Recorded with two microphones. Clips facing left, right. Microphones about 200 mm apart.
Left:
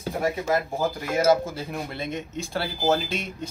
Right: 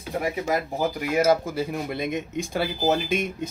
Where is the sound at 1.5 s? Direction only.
15° right (ahead or behind).